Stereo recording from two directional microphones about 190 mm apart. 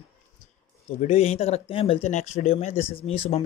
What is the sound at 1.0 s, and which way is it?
Speech, 30° left (ahead or behind).